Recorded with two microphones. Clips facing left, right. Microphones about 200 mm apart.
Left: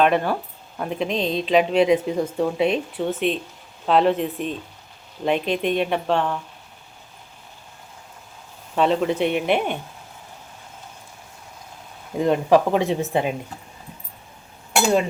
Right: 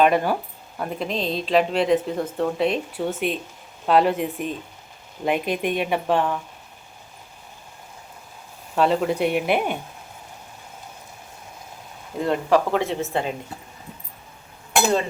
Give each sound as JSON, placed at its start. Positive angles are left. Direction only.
{"t": 0.0, "sound": "speech", "side_deg": -10}
{"t": 8.7, "sound": "speech", "side_deg": 0}
{"t": 12.2, "sound": "speech", "side_deg": 15}